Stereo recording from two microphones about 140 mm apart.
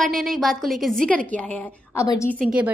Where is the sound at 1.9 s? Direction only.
20° left (ahead or behind).